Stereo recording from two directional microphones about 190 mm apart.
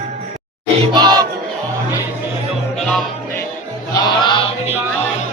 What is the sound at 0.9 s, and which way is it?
Crowd, 20° right (ahead or behind).